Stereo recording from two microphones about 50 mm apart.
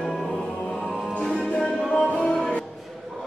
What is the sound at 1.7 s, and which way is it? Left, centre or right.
Music, centre.